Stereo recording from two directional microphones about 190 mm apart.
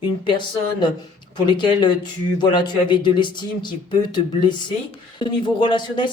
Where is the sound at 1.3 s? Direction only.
25° left (ahead or behind).